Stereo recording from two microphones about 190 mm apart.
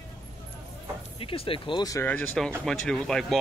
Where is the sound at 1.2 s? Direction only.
30° left (ahead or behind).